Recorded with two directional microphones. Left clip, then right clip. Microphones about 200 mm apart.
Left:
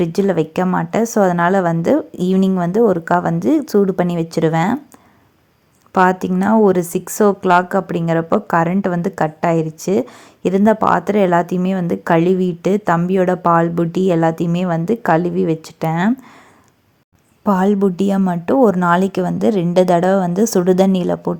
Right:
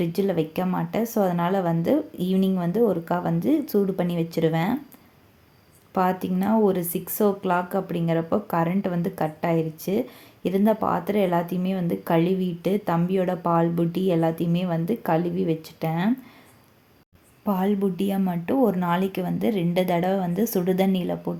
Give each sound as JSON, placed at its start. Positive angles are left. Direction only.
{"t": 0.0, "sound": "speech", "side_deg": 35}
{"t": 5.9, "sound": "speech", "side_deg": 35}
{"t": 17.4, "sound": "speech", "side_deg": 35}